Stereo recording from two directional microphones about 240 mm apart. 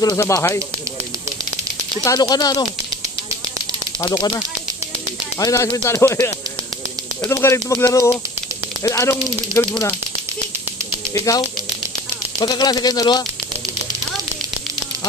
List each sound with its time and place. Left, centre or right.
0.0 s speech: centre
2.0 s speech: centre
5.4 s speech: centre
11.3 s speech: centre